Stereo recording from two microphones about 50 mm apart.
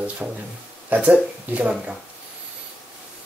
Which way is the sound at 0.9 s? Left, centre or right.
Right.